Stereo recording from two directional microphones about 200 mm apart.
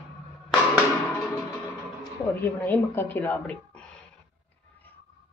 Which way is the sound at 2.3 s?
10° left (ahead or behind).